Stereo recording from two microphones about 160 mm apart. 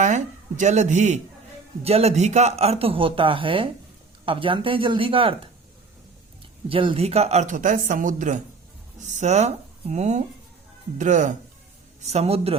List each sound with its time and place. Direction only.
0.0 s speech: 50° right (ahead or behind); by 5.3 s 35° right (ahead or behind)
6.7 s speech: 35° right (ahead or behind)